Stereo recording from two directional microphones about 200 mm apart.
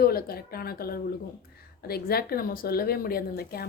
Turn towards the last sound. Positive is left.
turn(degrees=50)  # may be behind; listen again after turning